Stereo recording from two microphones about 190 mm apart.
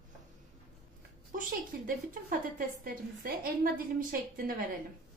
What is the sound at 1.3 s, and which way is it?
A woman's voice, 45° right (ahead or behind).